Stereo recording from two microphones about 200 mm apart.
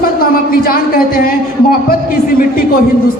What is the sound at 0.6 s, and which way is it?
Speech, 45° left (ahead or behind).